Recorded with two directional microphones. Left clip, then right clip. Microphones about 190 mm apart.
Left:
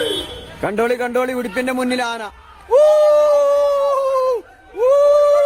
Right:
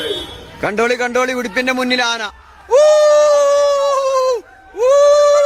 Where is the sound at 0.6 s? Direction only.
Centre (ahead or behind).